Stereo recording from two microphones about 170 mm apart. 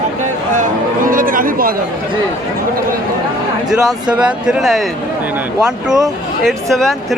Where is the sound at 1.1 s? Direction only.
55° right (ahead or behind).